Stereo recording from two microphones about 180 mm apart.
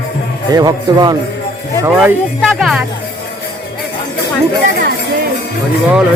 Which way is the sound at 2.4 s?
Centre (ahead or behind).